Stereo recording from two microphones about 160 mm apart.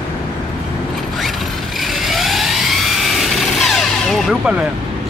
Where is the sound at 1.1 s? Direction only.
Centre (ahead or behind).